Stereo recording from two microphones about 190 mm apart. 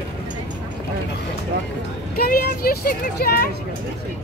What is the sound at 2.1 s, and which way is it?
Speech, 55° left (ahead or behind).